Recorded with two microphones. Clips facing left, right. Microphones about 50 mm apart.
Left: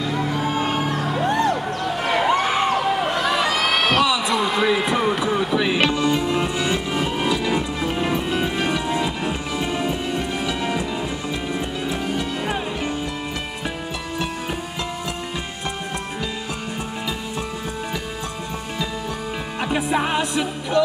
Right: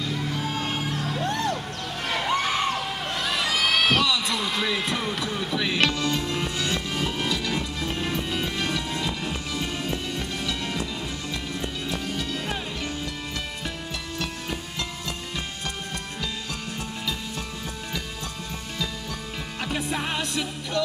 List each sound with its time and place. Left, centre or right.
0.2 s music: left
11.9 s music: centre
19.6 s music: centre